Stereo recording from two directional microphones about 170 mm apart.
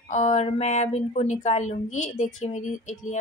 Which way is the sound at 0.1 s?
45° left (ahead or behind).